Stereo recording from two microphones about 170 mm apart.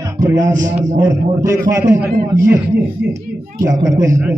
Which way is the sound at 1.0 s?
20° right (ahead or behind).